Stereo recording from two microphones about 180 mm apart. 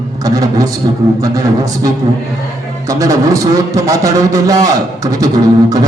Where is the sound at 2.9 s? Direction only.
20° right (ahead or behind).